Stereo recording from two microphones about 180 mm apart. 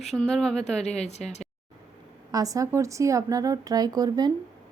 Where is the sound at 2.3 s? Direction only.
20° right (ahead or behind).